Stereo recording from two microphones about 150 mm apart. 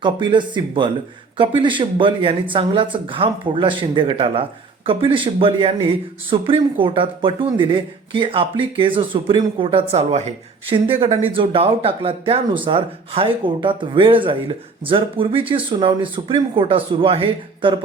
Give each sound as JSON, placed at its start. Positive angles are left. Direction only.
{"t": 0.0, "sound": "speech", "side_deg": -30}